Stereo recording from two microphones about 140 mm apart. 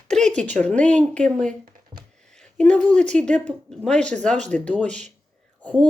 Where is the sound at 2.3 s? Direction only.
5° left (ahead or behind).